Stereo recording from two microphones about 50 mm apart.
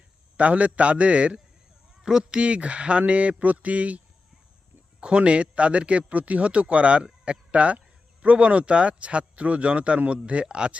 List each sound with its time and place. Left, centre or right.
0.3 s a man's voice: right